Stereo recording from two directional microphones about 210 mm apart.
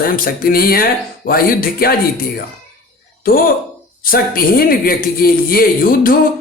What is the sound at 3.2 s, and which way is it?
Speech, 45° left (ahead or behind).